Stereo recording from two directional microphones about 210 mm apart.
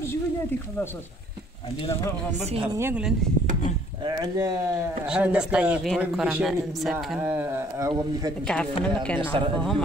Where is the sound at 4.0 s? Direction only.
20° right (ahead or behind).